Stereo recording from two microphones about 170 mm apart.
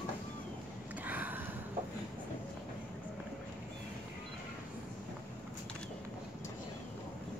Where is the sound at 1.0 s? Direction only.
10° right (ahead or behind).